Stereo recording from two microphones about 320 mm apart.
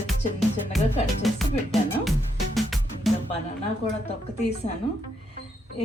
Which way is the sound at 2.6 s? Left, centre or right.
Centre.